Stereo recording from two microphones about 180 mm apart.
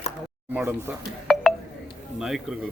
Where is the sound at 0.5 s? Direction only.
15° right (ahead or behind).